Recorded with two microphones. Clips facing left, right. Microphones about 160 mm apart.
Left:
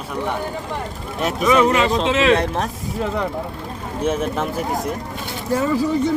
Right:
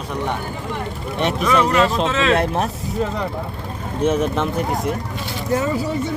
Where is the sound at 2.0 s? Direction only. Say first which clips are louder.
Left 2 dB; 15° left (ahead or behind).